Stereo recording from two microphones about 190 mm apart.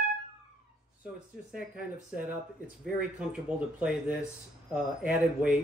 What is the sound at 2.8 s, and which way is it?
Speech, 5° right (ahead or behind).